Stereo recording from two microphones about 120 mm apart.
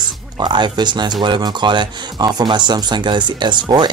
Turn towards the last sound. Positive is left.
turn(degrees=-40)  # may be behind; listen again after turning